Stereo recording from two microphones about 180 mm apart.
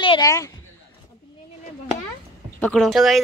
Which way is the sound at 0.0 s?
25° left (ahead or behind).